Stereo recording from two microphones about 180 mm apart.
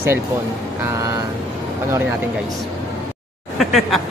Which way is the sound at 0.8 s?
15° right (ahead or behind).